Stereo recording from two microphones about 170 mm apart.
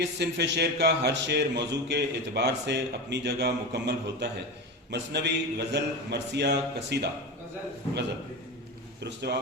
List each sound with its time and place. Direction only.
0.0 s speech: 85° right